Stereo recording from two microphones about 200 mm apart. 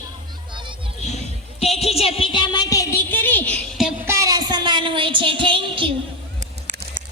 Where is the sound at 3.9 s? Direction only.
10° right (ahead or behind).